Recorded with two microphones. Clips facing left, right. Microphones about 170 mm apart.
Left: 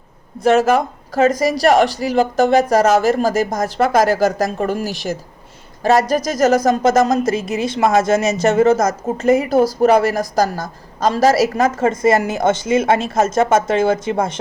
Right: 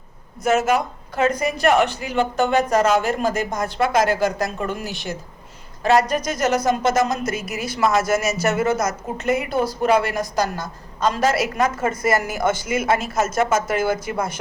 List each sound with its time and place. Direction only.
0.4 s speech: 35° left (ahead or behind)
7.3 s speech: 25° left (ahead or behind)
9.0 s speech: 40° left (ahead or behind); by 14.2 s 25° left (ahead or behind)